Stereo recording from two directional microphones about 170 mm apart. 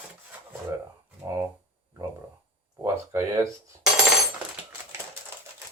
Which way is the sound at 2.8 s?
15° right (ahead or behind).